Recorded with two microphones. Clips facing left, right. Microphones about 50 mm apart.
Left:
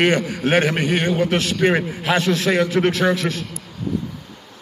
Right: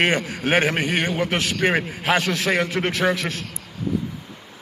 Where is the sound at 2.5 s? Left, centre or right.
Right.